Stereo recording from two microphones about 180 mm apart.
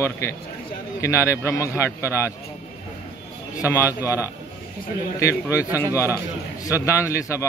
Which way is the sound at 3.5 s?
15° left (ahead or behind).